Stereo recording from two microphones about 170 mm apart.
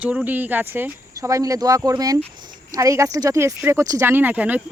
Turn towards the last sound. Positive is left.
turn(degrees=-10)  # may be behind; listen again after turning